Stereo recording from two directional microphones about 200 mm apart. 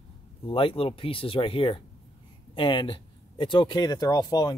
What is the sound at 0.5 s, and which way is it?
Speech, 25° left (ahead or behind).